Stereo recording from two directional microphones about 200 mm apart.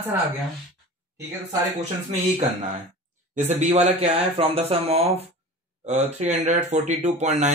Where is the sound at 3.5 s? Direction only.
35° right (ahead or behind).